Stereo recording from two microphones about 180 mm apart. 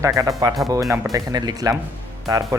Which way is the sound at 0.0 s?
20° right (ahead or behind).